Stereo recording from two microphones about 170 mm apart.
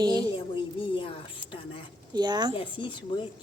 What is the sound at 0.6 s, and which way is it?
Speech, 30° left (ahead or behind).